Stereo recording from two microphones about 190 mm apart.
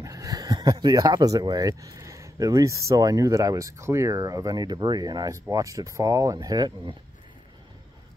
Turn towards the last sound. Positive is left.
turn(degrees=-20)  # may be behind; listen again after turning